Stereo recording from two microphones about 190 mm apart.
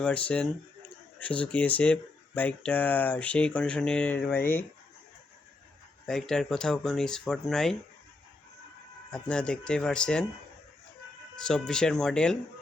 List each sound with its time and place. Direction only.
0.0 s speech: 5° left (ahead or behind)
6.1 s speech: centre (ahead or behind)
9.1 s speech: 5° left (ahead or behind)
11.3 s speech: 5° left (ahead or behind)